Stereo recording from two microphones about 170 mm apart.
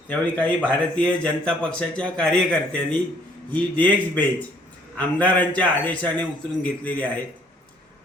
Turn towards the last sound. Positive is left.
turn(degrees=10)  # may be behind; listen again after turning